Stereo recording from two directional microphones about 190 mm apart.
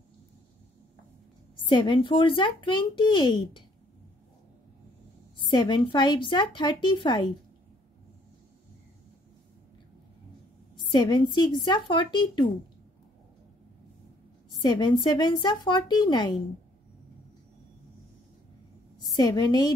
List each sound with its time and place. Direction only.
1.7 s speech: 25° left (ahead or behind)
5.4 s speech: 25° left (ahead or behind)
10.8 s speech: 20° left (ahead or behind)
14.6 s speech: 25° left (ahead or behind)
19.1 s speech: 20° left (ahead or behind)